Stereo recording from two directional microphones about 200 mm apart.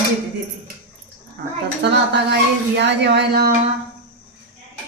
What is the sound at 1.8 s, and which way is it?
Speech, 60° right (ahead or behind).